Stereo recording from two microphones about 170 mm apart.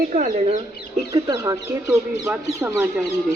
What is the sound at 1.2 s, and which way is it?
Speech, 20° right (ahead or behind).